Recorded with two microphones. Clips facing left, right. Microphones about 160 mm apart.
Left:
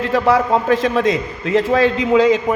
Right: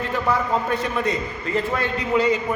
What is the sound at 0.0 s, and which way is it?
A man's voice, 90° left.